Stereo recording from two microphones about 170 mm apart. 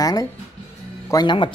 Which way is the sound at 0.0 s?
20° left (ahead or behind).